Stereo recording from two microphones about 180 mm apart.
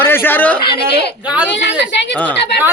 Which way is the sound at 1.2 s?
5° right (ahead or behind).